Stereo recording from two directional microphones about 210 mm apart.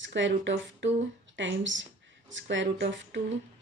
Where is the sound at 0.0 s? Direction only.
60° right (ahead or behind).